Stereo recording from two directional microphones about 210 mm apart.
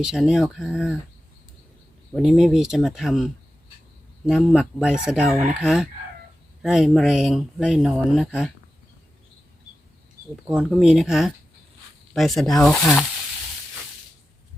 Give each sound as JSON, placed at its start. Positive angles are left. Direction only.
{"t": 0.0, "sound": "speech", "side_deg": 0}
{"t": 2.1, "sound": "speech", "side_deg": 0}
{"t": 10.4, "sound": "speech", "side_deg": -5}